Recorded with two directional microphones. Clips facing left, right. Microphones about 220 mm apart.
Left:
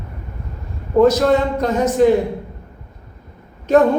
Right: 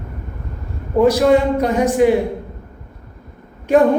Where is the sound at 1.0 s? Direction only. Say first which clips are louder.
Right 1 dB; 10° right (ahead or behind).